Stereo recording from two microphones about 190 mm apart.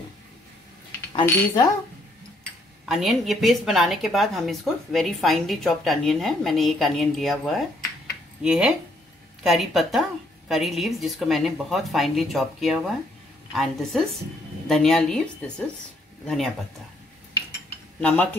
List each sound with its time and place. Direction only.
1.2 s speech: 15° left (ahead or behind)
2.9 s a woman's voice: centre (ahead or behind)
18.0 s speech: 10° left (ahead or behind)